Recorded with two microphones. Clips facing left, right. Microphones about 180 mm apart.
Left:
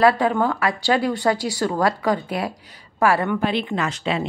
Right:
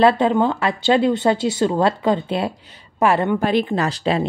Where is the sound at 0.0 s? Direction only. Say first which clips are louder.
Right 2 dB; 25° right (ahead or behind).